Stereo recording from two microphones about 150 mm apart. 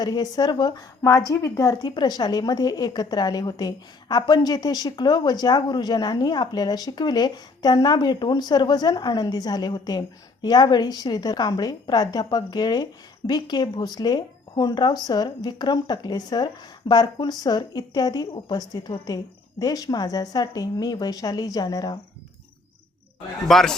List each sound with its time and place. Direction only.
0.0 s a woman's voice: 25° left (ahead or behind)
23.5 s speech: centre (ahead or behind)